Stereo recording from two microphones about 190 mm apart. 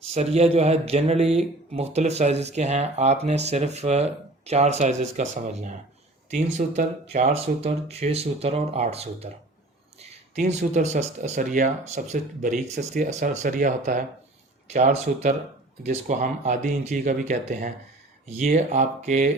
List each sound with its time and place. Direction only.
0.1 s speech: 35° right (ahead or behind)